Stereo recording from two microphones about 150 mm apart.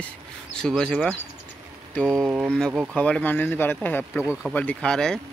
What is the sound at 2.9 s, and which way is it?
Speech, 10° left (ahead or behind).